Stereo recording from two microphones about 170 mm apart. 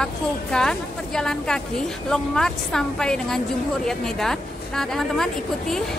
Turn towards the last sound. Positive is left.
turn(degrees=5)  # may be behind; listen again after turning